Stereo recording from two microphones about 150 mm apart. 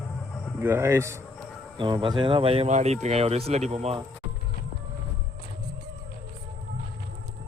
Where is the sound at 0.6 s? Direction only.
15° right (ahead or behind).